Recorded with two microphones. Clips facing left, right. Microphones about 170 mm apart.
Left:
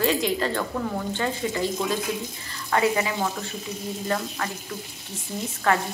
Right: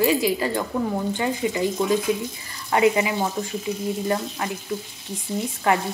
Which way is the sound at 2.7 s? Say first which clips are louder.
Right 4 dB; 20° right (ahead or behind).